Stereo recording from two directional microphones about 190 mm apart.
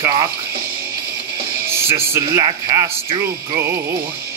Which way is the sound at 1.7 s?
15° right (ahead or behind).